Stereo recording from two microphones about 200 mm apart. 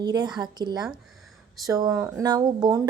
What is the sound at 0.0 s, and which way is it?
A woman's voice, 20° right (ahead or behind).